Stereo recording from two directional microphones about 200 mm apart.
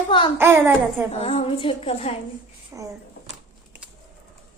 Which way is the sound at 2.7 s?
15° right (ahead or behind).